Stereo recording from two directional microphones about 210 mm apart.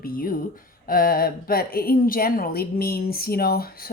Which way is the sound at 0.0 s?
45° left (ahead or behind).